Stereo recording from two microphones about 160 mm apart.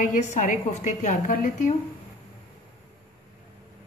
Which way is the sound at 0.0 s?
50° left (ahead or behind).